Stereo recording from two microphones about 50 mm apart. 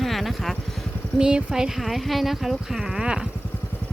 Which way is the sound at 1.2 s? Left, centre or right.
Centre.